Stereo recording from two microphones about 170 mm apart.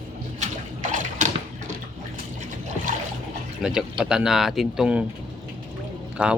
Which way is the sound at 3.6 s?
5° right (ahead or behind).